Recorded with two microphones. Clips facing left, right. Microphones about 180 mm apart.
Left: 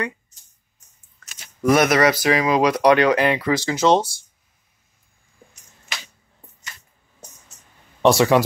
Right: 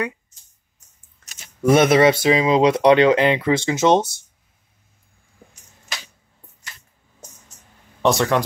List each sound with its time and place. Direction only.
1.6 s speech: 25° right (ahead or behind)
8.0 s speech: centre (ahead or behind)